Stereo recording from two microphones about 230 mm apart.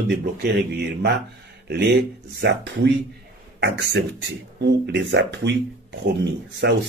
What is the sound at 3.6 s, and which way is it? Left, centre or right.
Speech, right.